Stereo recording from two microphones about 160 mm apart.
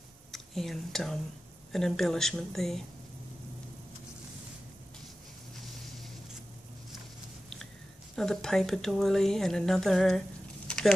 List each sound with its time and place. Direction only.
0.3 s speech: centre (ahead or behind)
8.2 s speech: 5° left (ahead or behind)